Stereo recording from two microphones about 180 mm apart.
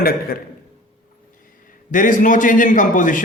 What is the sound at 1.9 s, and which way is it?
A man's voice, 45° left (ahead or behind).